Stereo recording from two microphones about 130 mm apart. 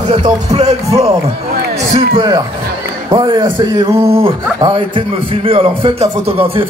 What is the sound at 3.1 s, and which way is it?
A man's voice, 30° right (ahead or behind).